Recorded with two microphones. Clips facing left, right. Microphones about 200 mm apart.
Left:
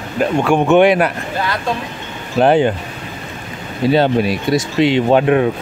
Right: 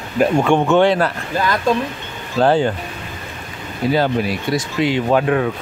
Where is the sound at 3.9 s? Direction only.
25° left (ahead or behind).